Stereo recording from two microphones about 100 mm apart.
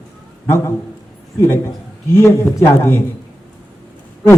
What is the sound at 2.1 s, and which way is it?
Speech, 25° left (ahead or behind).